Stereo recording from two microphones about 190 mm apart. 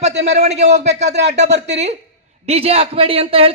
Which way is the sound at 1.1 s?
65° right (ahead or behind).